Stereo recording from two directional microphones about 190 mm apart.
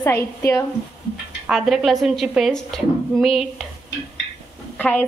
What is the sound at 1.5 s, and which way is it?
A woman's voice, centre (ahead or behind).